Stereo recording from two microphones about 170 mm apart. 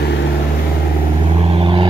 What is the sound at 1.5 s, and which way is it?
Vehicle, 30° right (ahead or behind).